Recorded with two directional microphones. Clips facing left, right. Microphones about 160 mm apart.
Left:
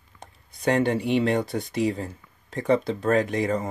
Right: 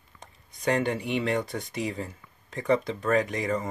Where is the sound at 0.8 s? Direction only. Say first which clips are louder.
Left 5 dB; 30° left (ahead or behind).